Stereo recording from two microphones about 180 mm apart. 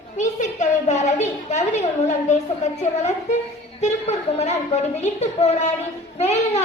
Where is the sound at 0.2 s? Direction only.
40° left (ahead or behind).